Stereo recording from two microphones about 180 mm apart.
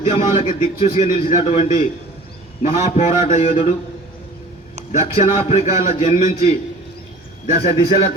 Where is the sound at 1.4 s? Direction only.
35° left (ahead or behind).